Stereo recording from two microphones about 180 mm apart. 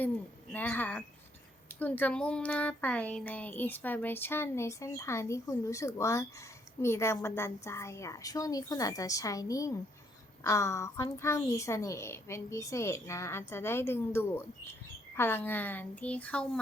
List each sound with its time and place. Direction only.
0.5 s speech: 10° left (ahead or behind)